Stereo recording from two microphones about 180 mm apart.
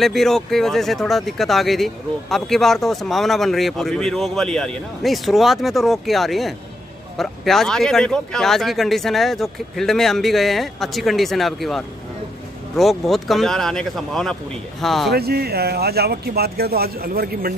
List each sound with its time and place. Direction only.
0.0 s speech: centre (ahead or behind)
15.0 s speech: 60° right (ahead or behind)